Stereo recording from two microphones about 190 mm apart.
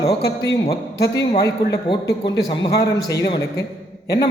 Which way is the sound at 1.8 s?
20° left (ahead or behind).